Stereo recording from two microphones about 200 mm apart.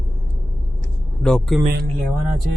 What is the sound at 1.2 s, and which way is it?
Speech, 5° left (ahead or behind).